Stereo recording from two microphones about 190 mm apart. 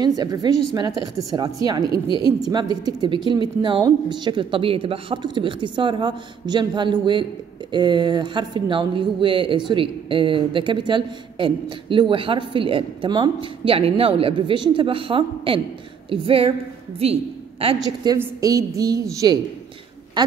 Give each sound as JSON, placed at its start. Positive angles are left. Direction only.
{"t": 0.0, "sound": "a woman's voice", "side_deg": -20}
{"t": 18.1, "sound": "a woman's voice", "side_deg": -15}